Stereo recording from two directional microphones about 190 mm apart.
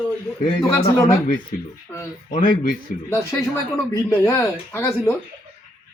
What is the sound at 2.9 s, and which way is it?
Speech, 45° left (ahead or behind).